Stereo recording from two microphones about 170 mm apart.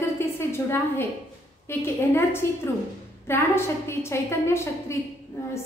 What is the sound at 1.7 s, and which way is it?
A woman's voice, 15° left (ahead or behind).